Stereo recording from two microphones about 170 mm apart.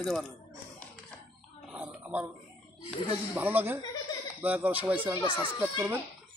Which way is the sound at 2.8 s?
25° left (ahead or behind).